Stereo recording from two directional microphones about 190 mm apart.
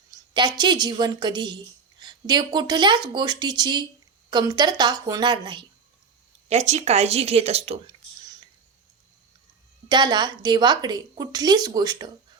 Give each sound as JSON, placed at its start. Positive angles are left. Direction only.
{"t": 0.3, "sound": "a woman's voice", "side_deg": -20}
{"t": 6.5, "sound": "speech", "side_deg": -35}
{"t": 9.9, "sound": "a woman's voice", "side_deg": -25}